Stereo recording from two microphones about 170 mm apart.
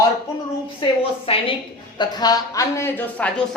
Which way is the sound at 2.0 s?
25° left (ahead or behind).